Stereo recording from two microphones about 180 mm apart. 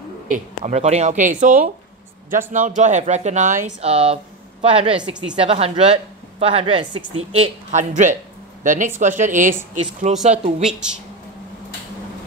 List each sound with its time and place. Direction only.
0.3 s a woman's voice: 40° right (ahead or behind)
10.6 s a woman's voice: 5° right (ahead or behind)